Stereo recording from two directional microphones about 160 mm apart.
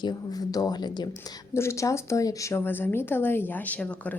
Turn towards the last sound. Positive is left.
turn(degrees=10)  # may be behind; listen again after turning